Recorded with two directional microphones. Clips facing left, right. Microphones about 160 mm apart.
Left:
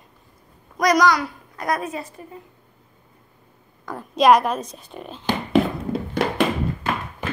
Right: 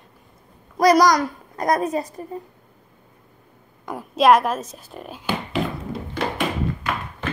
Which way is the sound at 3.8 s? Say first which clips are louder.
Right 1 dB; 15° right (ahead or behind).